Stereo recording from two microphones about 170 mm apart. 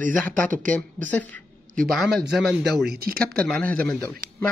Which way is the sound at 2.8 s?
65° right (ahead or behind).